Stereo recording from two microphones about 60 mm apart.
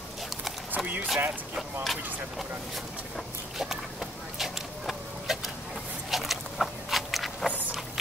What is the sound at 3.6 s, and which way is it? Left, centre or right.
Vehicle, centre.